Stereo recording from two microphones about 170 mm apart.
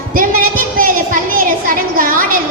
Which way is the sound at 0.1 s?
55° right (ahead or behind).